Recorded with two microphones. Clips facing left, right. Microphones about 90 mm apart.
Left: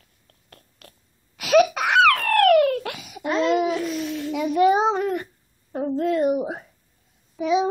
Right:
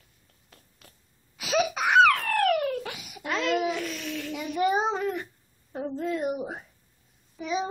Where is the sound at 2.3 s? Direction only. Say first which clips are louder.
Left 8 dB; 75° left (ahead or behind).